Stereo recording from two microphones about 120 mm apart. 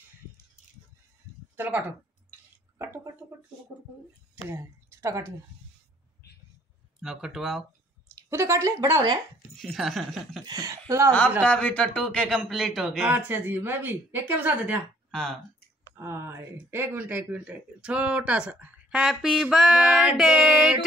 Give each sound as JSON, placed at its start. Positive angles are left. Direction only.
{"t": 1.6, "sound": "speech", "side_deg": -15}
{"t": 4.5, "sound": "speech", "side_deg": -20}
{"t": 7.0, "sound": "speech", "side_deg": -5}
{"t": 8.2, "sound": "speech", "side_deg": -25}
{"t": 9.6, "sound": "speech", "side_deg": 0}
{"t": 10.4, "sound": "speech", "side_deg": -30}
{"t": 11.4, "sound": "speech", "side_deg": 10}
{"t": 13.1, "sound": "speech", "side_deg": -15}
{"t": 15.0, "sound": "speech", "side_deg": 5}
{"t": 16.0, "sound": "speech", "side_deg": -20}